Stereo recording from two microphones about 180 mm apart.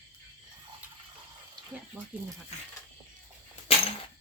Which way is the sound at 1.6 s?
25° right (ahead or behind).